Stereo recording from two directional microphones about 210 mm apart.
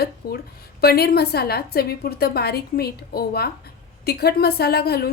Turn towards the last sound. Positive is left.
turn(degrees=50)  # may be behind; listen again after turning